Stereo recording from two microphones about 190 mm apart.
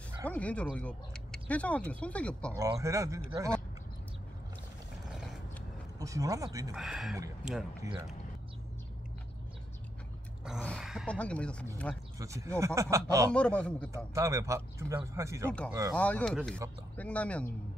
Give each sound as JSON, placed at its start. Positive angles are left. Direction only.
{"t": 0.2, "sound": "speech", "side_deg": 5}
{"t": 2.5, "sound": "speech", "side_deg": -15}
{"t": 5.9, "sound": "speech", "side_deg": -15}
{"t": 6.7, "sound": "speech", "side_deg": 0}
{"t": 7.8, "sound": "speech", "side_deg": -20}
{"t": 10.6, "sound": "speech", "side_deg": 0}
{"t": 12.2, "sound": "speech", "side_deg": -15}
{"t": 13.3, "sound": "speech", "side_deg": 5}
{"t": 13.9, "sound": "speech", "side_deg": -15}
{"t": 16.0, "sound": "speech", "side_deg": 5}